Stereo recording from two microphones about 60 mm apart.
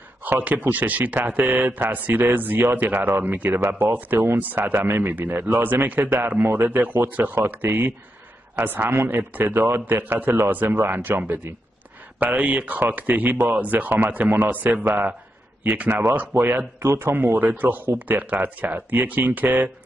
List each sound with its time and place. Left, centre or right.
0.2 s a man's voice: right